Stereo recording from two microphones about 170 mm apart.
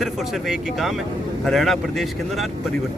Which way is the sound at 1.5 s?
Centre (ahead or behind).